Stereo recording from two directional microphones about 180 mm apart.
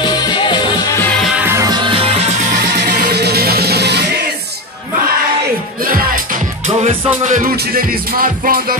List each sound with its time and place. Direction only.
0.0 s music: 25° left (ahead or behind)
1.2 s music: 10° right (ahead or behind); by 2.3 s 35° right (ahead or behind)
2.5 s music: 65° right (ahead or behind)
7.2 s music: 50° right (ahead or behind)